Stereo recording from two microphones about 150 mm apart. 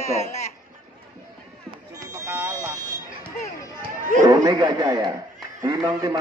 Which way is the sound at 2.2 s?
15° right (ahead or behind).